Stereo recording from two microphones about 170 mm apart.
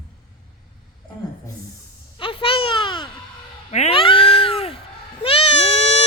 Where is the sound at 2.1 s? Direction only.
30° left (ahead or behind).